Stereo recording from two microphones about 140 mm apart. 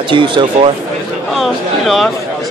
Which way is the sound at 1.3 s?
Centre (ahead or behind).